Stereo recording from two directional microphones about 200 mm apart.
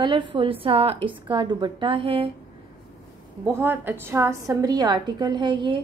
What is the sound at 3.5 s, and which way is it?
A woman's voice, 10° right (ahead or behind).